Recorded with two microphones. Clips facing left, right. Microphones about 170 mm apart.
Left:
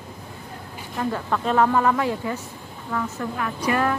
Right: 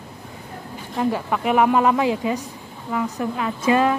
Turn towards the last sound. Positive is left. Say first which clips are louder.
# right 4 dB
turn(degrees=-20)  # may be behind; listen again after turning